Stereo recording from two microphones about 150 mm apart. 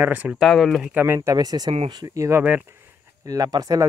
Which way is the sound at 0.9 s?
15° right (ahead or behind).